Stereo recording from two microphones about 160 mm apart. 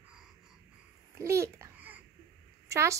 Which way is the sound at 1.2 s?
20° right (ahead or behind).